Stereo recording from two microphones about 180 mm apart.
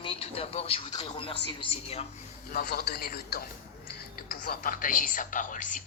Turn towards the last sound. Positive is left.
turn(degrees=45)  # may be behind; listen again after turning